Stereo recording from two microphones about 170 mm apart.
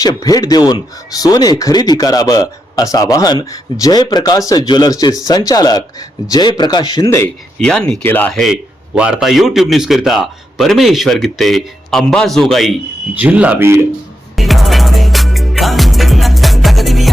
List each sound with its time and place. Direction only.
0.0 s speech: 25° left (ahead or behind)
7.6 s a man's voice: 5° left (ahead or behind); by 13.8 s 15° right (ahead or behind)
14.3 s music: centre (ahead or behind)